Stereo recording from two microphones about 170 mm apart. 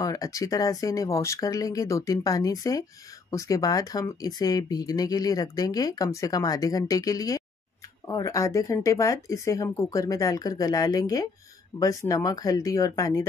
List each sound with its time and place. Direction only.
0.0 s speech: 20° left (ahead or behind)